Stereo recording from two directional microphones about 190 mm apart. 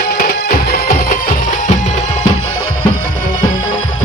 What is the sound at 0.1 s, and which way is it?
Music, 55° left (ahead or behind).